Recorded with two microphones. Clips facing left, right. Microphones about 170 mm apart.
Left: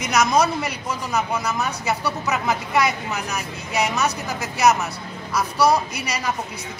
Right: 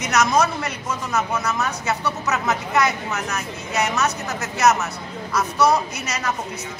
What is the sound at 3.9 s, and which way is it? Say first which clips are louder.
Speech: even; centre (ahead or behind).